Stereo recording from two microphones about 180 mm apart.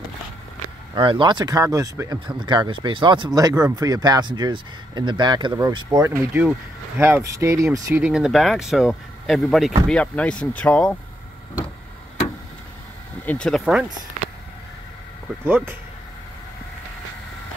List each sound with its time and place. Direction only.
0.9 s speech: 25° right (ahead or behind); by 11.0 s 5° left (ahead or behind)
13.2 s speech: 5° left (ahead or behind)
15.4 s speech: 10° right (ahead or behind)